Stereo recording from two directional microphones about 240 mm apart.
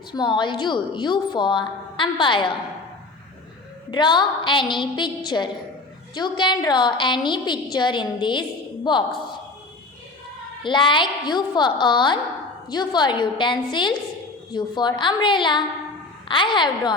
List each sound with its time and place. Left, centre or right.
0.1 s a woman's voice: centre
3.9 s a woman's voice: centre
10.6 s a woman's voice: centre